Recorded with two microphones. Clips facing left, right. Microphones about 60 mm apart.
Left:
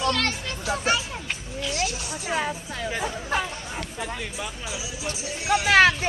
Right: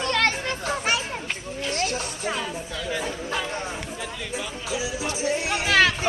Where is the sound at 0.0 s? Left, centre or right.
Right.